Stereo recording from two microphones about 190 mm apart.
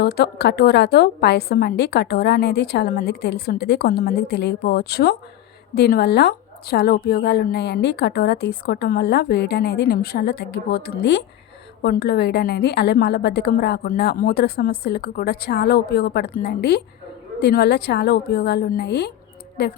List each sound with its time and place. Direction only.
0.0 s a woman's voice: 55° left (ahead or behind)